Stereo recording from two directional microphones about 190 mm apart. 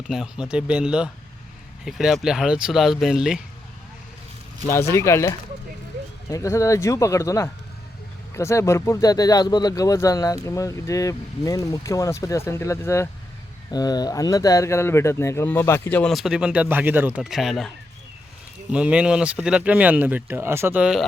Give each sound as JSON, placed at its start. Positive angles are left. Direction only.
{"t": 0.1, "sound": "speech", "side_deg": -5}
{"t": 4.6, "sound": "speech", "side_deg": 15}
{"t": 18.7, "sound": "speech", "side_deg": -5}